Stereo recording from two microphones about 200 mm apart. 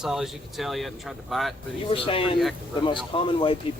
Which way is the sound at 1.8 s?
25° left (ahead or behind).